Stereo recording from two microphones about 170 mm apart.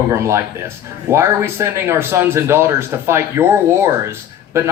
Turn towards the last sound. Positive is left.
turn(degrees=-15)  # may be behind; listen again after turning